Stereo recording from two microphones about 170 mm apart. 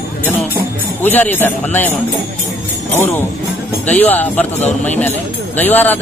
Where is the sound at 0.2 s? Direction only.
10° left (ahead or behind).